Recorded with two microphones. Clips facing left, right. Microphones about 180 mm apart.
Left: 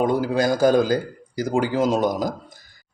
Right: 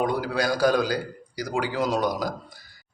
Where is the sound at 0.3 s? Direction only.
45° left (ahead or behind).